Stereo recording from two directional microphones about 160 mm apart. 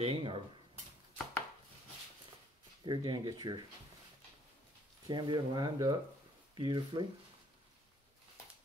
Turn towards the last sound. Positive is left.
turn(degrees=-30)  # may be behind; listen again after turning